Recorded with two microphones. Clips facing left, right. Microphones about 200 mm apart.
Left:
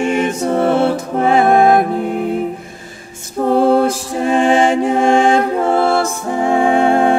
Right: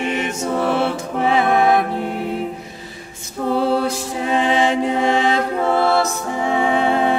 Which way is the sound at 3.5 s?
50° left (ahead or behind).